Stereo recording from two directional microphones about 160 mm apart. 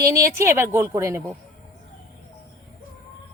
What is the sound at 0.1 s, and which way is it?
Speech, 15° right (ahead or behind).